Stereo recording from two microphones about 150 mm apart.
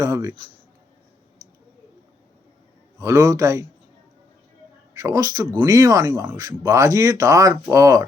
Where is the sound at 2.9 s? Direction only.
20° right (ahead or behind).